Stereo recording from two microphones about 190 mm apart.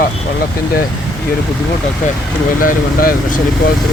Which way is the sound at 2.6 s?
45° left (ahead or behind).